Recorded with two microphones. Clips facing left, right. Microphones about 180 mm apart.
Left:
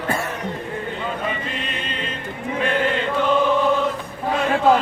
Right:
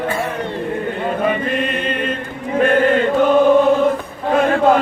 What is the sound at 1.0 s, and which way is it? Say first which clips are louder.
Chant: right 10 dB; 55° right (ahead or behind).